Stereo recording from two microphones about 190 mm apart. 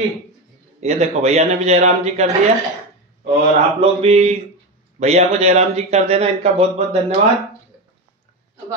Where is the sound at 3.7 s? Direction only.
30° right (ahead or behind).